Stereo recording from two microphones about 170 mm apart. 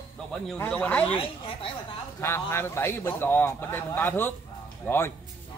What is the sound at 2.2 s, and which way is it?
A man's voice, 15° left (ahead or behind).